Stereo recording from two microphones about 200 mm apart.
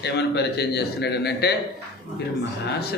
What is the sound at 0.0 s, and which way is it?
A man's voice, 55° left (ahead or behind).